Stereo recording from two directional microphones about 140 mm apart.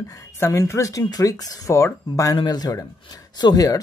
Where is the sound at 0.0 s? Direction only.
20° left (ahead or behind).